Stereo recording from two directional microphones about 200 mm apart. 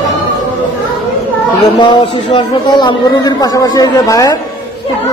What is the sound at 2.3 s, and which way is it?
Speech, 25° left (ahead or behind).